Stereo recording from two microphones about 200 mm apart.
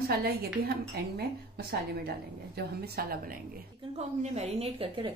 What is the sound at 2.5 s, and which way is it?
Speech, 50° right (ahead or behind).